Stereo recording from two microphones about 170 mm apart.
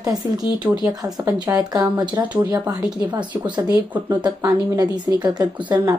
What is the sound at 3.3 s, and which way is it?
Speech, 10° right (ahead or behind).